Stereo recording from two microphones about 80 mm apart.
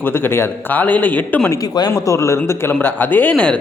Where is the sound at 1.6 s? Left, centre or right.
Left.